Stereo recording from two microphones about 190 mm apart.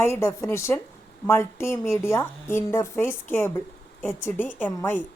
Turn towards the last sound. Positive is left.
turn(degrees=10)  # may be behind; listen again after turning